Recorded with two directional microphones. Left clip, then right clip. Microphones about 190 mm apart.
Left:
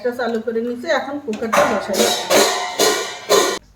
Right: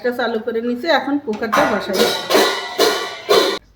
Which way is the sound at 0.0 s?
45° right (ahead or behind).